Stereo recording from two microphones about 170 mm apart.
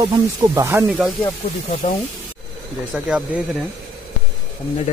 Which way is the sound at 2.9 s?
5° right (ahead or behind).